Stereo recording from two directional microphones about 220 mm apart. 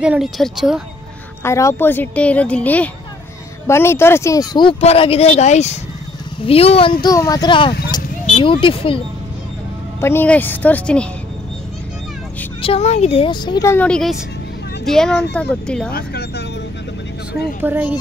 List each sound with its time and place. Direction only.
0.0 s speech: 5° right (ahead or behind)
1.4 s speech: 15° left (ahead or behind)
9.9 s speech: 10° left (ahead or behind)
12.6 s speech: 30° left (ahead or behind); by 15.9 s 5° left (ahead or behind)
15.9 s speech: 45° left (ahead or behind)
17.6 s speech: 10° right (ahead or behind)